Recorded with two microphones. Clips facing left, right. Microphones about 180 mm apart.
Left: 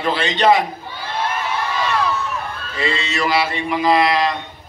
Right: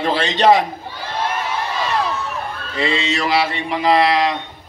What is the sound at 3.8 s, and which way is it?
Speech, 30° right (ahead or behind).